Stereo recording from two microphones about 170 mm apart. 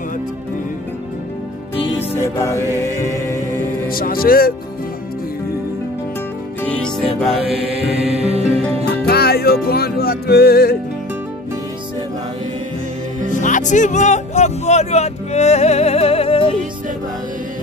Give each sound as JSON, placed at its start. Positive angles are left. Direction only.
{"t": 2.1, "sound": "music", "side_deg": 15}
{"t": 3.9, "sound": "speech", "side_deg": 60}
{"t": 6.6, "sound": "music", "side_deg": 5}
{"t": 8.3, "sound": "music", "side_deg": -35}
{"t": 8.9, "sound": "music", "side_deg": 70}
{"t": 13.3, "sound": "speech", "side_deg": 50}